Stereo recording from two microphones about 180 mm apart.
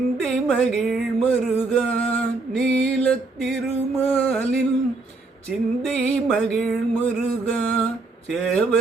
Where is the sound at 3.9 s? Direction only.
10° left (ahead or behind).